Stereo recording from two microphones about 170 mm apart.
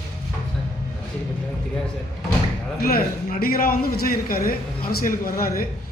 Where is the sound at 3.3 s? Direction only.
60° left (ahead or behind).